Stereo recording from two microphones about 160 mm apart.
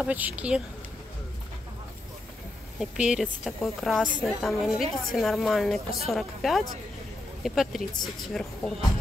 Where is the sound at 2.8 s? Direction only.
5° right (ahead or behind).